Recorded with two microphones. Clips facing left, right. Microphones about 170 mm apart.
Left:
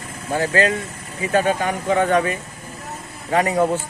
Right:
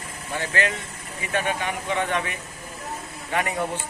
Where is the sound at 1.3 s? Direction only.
40° left (ahead or behind).